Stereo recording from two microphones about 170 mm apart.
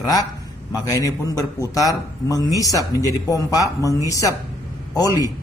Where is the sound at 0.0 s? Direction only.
20° left (ahead or behind).